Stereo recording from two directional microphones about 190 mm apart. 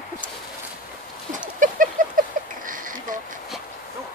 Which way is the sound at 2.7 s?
45° right (ahead or behind).